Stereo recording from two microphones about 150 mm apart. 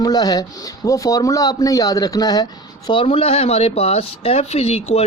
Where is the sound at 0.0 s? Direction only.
25° left (ahead or behind).